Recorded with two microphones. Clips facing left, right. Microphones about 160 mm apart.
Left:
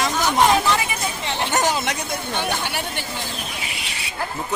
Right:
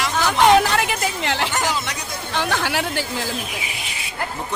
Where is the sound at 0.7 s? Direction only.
75° right (ahead or behind); by 3.0 s 90° right.